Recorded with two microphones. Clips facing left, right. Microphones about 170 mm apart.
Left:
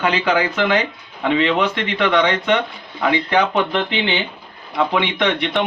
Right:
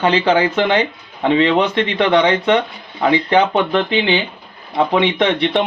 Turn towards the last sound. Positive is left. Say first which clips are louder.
# right 3 dB
turn(degrees=-25)  # may be behind; listen again after turning